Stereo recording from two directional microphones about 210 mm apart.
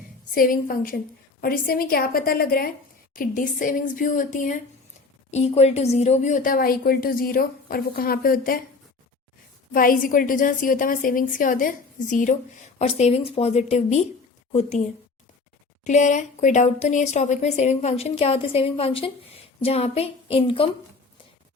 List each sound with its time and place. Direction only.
0.3 s a woman's voice: 40° left (ahead or behind)
9.7 s a woman's voice: 40° left (ahead or behind)
15.8 s a woman's voice: 35° left (ahead or behind)